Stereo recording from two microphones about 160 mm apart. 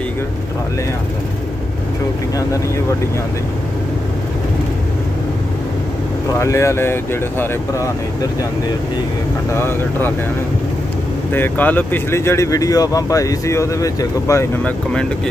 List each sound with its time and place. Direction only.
6.4 s speech: 20° left (ahead or behind)
9.5 s speech: 15° left (ahead or behind)
11.3 s speech: 10° left (ahead or behind)